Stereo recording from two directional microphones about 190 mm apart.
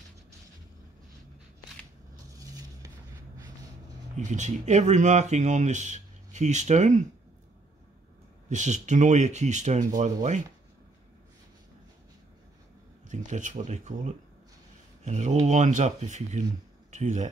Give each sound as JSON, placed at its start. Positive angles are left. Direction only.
{"t": 2.3, "sound": "a sound", "side_deg": -20}
{"t": 4.2, "sound": "speech", "side_deg": -40}
{"t": 8.5, "sound": "speech", "side_deg": -40}
{"t": 13.1, "sound": "speech", "side_deg": -40}